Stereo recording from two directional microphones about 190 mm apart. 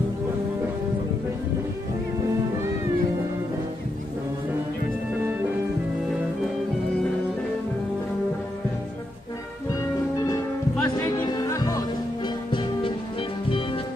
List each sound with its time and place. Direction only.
10.1 s music: 20° left (ahead or behind)